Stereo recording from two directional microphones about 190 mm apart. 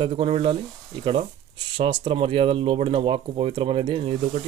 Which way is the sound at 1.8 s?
25° right (ahead or behind).